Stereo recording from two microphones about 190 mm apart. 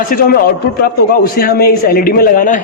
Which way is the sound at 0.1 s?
50° left (ahead or behind).